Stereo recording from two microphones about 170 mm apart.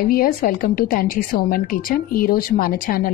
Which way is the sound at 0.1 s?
60° left (ahead or behind).